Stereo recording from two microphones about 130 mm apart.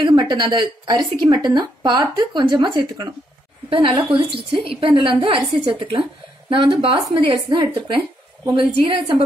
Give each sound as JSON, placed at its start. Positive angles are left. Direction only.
{"t": 0.0, "sound": "a woman's voice", "side_deg": -35}